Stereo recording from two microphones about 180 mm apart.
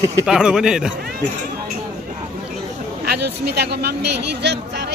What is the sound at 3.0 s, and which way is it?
Speech, 65° right (ahead or behind).